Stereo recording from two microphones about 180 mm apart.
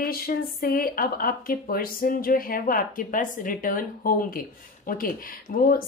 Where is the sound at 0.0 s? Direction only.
55° left (ahead or behind).